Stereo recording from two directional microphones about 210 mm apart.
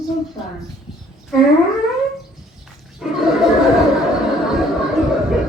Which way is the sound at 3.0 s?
Centre (ahead or behind).